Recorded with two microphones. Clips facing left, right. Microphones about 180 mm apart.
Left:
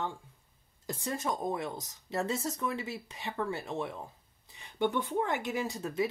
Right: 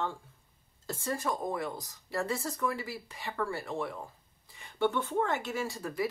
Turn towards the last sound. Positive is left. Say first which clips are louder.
# left 1 dB
turn(degrees=20)  # may be behind; listen again after turning